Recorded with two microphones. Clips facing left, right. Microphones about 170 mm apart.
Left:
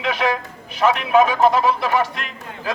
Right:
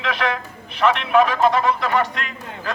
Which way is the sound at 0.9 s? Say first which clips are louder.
Left 1 dB; 5° left (ahead or behind).